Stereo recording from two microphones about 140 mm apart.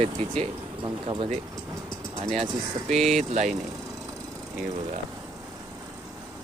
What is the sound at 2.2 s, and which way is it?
Speech, 45° right (ahead or behind).